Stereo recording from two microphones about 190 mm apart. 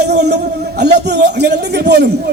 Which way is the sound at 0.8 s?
60° right (ahead or behind).